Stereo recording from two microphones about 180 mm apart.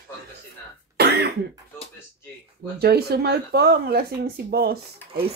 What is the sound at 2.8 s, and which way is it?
Speech, 60° right (ahead or behind).